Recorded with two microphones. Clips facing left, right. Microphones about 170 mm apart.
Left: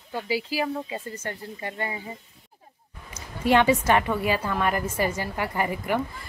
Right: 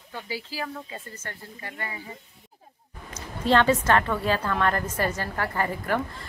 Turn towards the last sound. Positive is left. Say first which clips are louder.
# left 1 dB
turn(degrees=15)  # may be behind; listen again after turning